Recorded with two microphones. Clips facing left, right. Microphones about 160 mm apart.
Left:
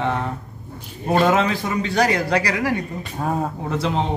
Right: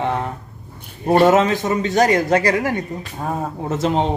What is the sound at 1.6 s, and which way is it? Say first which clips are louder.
Speech: right 3 dB; 45° right (ahead or behind).